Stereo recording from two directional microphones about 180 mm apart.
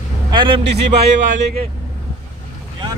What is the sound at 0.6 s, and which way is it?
Speech, 70° right (ahead or behind).